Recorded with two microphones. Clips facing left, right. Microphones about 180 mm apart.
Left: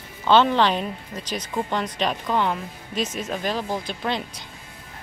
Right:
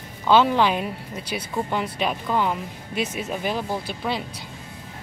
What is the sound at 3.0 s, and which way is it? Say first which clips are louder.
Speech: even; 65° right (ahead or behind).